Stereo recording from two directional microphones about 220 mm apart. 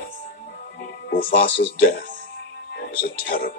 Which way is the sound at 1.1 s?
40° left (ahead or behind).